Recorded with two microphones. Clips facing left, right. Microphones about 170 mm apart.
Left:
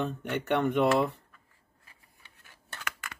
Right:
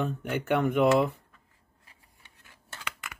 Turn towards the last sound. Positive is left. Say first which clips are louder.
# even
turn(degrees=-20)  # may be behind; listen again after turning